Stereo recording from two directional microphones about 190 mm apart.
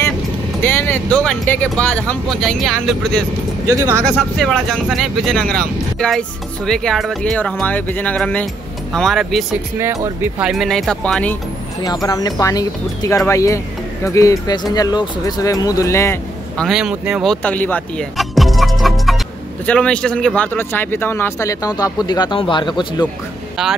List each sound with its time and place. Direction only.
0.6 s speech: 10° left (ahead or behind)
3.6 s speech: 15° right (ahead or behind)
4.0 s speech: 5° left (ahead or behind)
10.0 s speech: 10° right (ahead or behind)
10.5 s speech: centre (ahead or behind)
11.8 s speech: 20° left (ahead or behind)
16.6 s speech: 5° right (ahead or behind); by 23.0 s 25° left (ahead or behind)